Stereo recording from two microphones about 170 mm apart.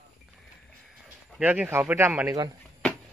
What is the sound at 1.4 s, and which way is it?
Speech, 10° right (ahead or behind).